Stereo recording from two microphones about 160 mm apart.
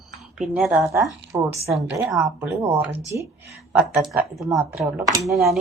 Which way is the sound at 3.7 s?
5° right (ahead or behind).